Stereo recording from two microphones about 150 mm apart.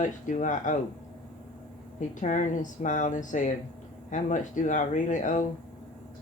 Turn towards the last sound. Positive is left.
turn(degrees=55)  # may be behind; listen again after turning